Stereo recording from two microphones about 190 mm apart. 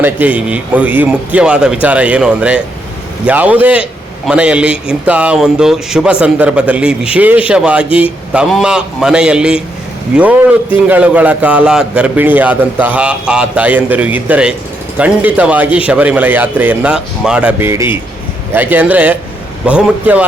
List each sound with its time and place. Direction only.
0.0 s a man's voice: 10° right (ahead or behind)
10.8 s a man's voice: 5° right (ahead or behind)